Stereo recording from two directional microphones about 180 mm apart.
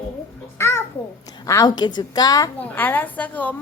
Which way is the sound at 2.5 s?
10° left (ahead or behind).